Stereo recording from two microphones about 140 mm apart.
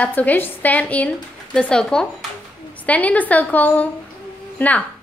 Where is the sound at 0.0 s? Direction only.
10° left (ahead or behind).